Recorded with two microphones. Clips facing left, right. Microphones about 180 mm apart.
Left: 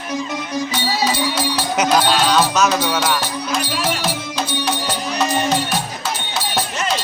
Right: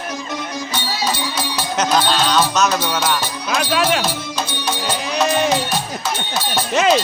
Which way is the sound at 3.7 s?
90° right.